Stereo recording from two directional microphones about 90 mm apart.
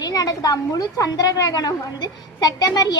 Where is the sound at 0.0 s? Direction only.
45° left (ahead or behind).